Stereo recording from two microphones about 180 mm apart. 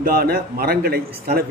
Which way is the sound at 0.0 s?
60° right (ahead or behind).